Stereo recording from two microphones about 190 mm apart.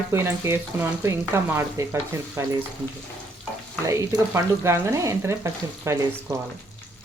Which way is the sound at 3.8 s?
15° right (ahead or behind).